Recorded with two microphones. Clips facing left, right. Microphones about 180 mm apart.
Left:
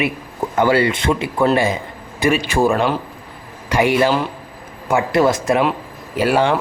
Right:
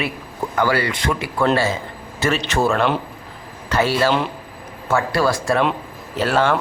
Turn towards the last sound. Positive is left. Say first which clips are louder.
# left 2 dB
turn(degrees=10)  # may be behind; listen again after turning